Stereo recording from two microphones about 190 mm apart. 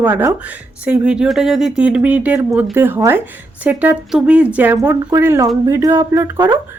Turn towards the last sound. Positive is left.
turn(degrees=-20)  # may be behind; listen again after turning